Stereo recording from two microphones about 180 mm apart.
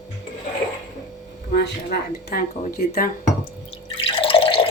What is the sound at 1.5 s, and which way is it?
Speech, 65° left (ahead or behind).